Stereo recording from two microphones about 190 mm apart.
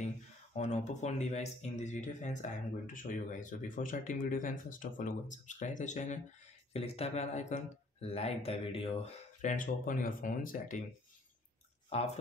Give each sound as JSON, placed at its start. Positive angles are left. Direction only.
{"t": 0.6, "sound": "speech", "side_deg": 35}
{"t": 11.9, "sound": "speech", "side_deg": 35}